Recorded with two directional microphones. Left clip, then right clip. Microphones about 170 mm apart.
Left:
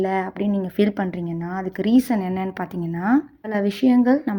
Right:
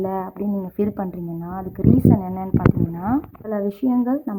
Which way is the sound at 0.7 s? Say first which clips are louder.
Left 4 dB; 35° left (ahead or behind).